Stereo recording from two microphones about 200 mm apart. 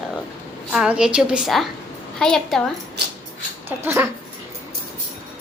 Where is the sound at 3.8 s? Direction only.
10° right (ahead or behind).